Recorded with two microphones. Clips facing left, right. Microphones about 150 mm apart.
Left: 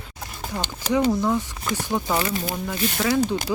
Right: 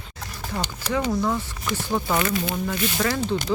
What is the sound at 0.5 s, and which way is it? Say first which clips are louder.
Speech: left 3 dB; 15° left (ahead or behind).